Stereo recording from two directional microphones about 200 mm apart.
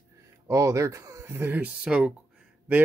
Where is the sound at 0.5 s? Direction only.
15° right (ahead or behind).